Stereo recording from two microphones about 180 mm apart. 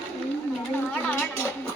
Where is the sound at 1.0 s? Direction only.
15° left (ahead or behind).